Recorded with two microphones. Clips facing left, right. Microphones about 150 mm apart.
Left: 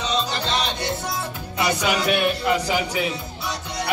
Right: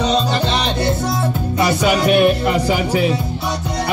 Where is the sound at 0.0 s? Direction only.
60° right (ahead or behind).